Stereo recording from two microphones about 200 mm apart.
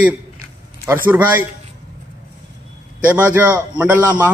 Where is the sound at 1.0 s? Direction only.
10° right (ahead or behind).